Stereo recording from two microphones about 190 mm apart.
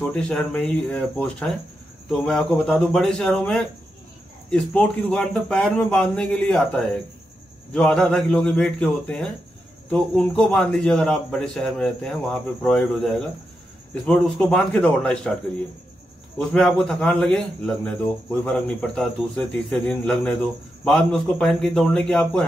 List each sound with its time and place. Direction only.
0.0 s a man's voice: 5° left (ahead or behind)
16.3 s a man's voice: centre (ahead or behind)